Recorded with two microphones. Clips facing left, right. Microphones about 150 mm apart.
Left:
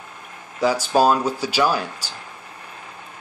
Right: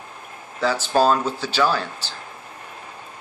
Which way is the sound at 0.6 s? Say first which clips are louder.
Left 1 dB; 10° left (ahead or behind).